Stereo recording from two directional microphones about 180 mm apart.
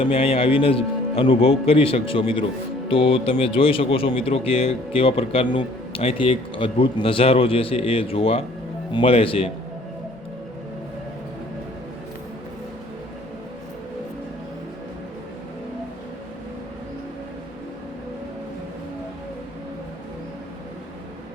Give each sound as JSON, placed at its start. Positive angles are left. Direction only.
{"t": 0.0, "sound": "speech", "side_deg": 30}